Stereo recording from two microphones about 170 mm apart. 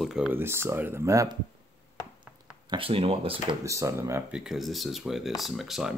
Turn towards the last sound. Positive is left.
turn(degrees=0)  # may be behind; listen again after turning